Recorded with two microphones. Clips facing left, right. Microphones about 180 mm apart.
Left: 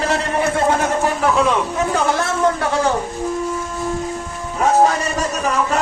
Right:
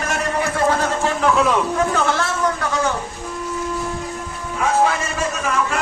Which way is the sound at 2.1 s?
25° left (ahead or behind).